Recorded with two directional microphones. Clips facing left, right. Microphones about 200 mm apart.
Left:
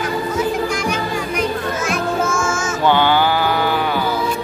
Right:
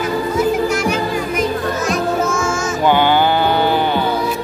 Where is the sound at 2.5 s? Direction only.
15° right (ahead or behind).